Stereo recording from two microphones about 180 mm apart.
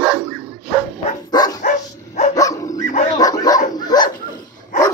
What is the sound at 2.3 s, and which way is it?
Dog, 20° left (ahead or behind).